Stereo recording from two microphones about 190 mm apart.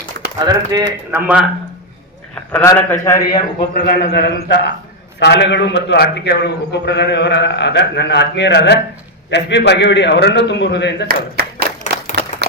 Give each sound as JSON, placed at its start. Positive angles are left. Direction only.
{"t": 0.4, "sound": "speech", "side_deg": -20}
{"t": 1.1, "sound": "speech", "side_deg": -5}
{"t": 2.5, "sound": "a man's voice", "side_deg": 10}
{"t": 3.8, "sound": "a man's voice", "side_deg": 55}
{"t": 12.4, "sound": "a sound", "side_deg": -60}